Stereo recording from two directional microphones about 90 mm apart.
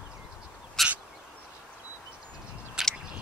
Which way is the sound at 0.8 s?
Centre (ahead or behind).